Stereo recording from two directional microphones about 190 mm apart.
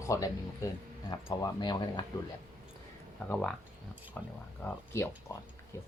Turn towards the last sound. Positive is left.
turn(degrees=15)  # may be behind; listen again after turning